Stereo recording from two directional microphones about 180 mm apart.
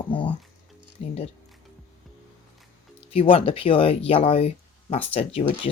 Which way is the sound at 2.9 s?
30° left (ahead or behind).